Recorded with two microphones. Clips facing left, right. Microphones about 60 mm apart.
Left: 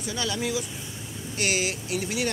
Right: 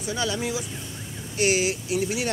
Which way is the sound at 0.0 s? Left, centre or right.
Centre.